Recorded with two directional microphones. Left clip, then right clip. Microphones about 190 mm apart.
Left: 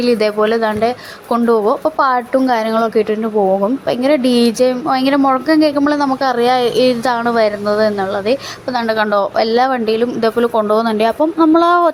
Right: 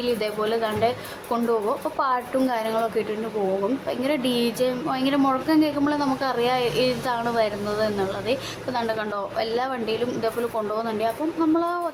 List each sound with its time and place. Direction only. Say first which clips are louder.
0.0 s a woman's voice: left 11 dB; 35° left (ahead or behind)